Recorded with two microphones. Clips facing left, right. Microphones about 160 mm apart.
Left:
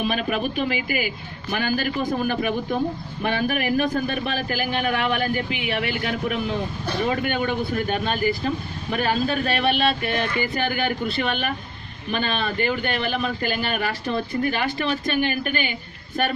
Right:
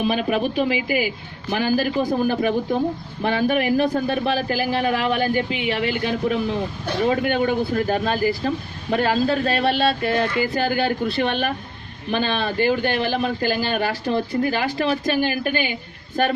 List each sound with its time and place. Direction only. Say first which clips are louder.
0.0 s a man's voice: right 3 dB; 30° right (ahead or behind)